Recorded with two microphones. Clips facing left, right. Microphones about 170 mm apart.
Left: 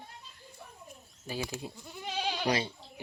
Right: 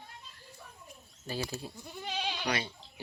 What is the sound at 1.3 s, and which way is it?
Speech, 10° left (ahead or behind).